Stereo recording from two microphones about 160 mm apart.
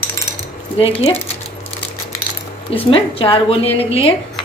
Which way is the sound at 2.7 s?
35° left (ahead or behind).